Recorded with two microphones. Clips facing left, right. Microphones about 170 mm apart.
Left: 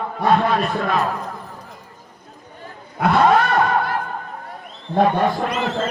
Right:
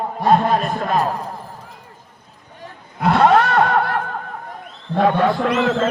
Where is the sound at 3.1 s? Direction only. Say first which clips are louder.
Right 2 dB; 65° right (ahead or behind).